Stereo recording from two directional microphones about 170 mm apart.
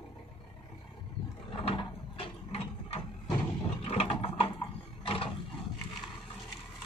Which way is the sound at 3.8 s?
35° left (ahead or behind).